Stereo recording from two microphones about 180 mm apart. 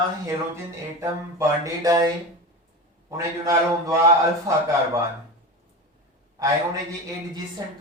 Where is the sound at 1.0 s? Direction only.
15° right (ahead or behind).